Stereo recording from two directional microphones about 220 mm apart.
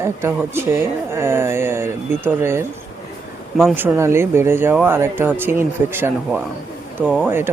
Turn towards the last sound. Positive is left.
turn(degrees=-10)  # may be behind; listen again after turning